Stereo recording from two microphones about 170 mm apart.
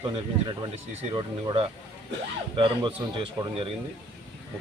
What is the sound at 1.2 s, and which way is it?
A man's voice, 30° right (ahead or behind).